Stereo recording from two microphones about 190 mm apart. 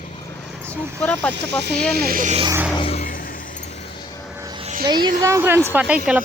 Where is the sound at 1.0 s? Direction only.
5° left (ahead or behind).